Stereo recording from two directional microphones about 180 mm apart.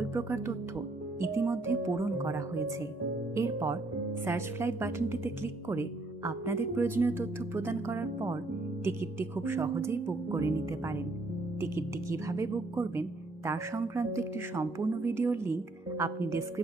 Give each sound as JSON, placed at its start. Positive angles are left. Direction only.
{"t": 0.1, "sound": "speech", "side_deg": -15}
{"t": 3.6, "sound": "speech", "side_deg": -15}